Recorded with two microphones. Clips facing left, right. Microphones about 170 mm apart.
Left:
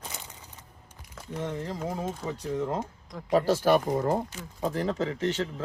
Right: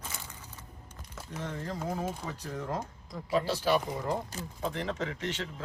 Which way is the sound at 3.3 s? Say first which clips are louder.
Left 6 dB; 45° left (ahead or behind).